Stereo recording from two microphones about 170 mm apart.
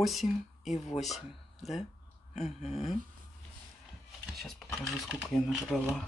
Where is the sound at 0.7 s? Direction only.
40° left (ahead or behind).